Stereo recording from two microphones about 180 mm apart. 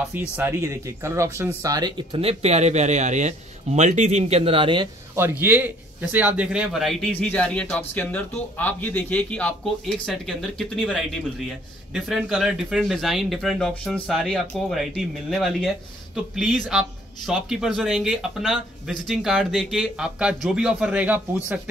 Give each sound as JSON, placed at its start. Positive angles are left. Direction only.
{"t": 0.4, "sound": "speech", "side_deg": -15}
{"t": 5.1, "sound": "a man's voice", "side_deg": -10}